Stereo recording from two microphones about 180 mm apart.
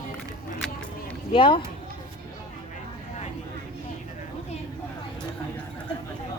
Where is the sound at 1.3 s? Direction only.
30° left (ahead or behind).